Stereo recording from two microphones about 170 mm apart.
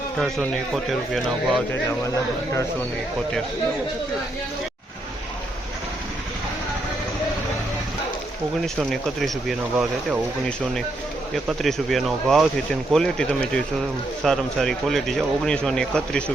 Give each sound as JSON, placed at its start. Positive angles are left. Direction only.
{"t": 0.2, "sound": "speech", "side_deg": 0}
{"t": 2.0, "sound": "speech", "side_deg": 15}
{"t": 8.6, "sound": "speech", "side_deg": 0}
{"t": 11.4, "sound": "speech", "side_deg": 0}